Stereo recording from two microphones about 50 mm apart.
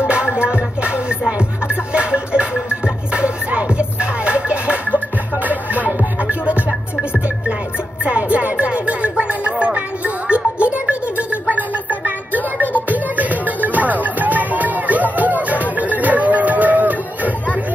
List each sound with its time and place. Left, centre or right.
0.0 s music: centre
8.0 s music: right
12.7 s music: right